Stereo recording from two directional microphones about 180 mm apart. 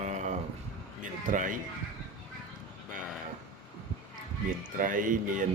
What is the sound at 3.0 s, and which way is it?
Livestock, centre (ahead or behind).